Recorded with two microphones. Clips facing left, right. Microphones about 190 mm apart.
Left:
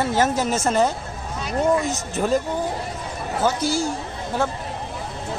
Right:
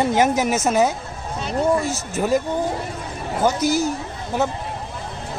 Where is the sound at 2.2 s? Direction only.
10° right (ahead or behind).